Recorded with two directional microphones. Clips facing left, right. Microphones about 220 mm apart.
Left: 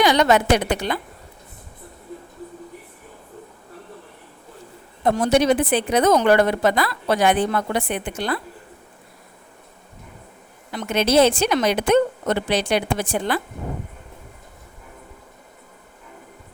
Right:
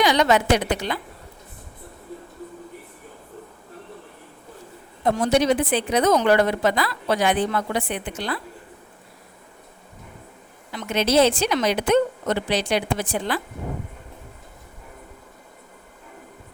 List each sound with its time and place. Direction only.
0.0 s a woman's voice: 55° left (ahead or behind)
5.0 s a woman's voice: 55° left (ahead or behind)
10.7 s a woman's voice: 50° left (ahead or behind)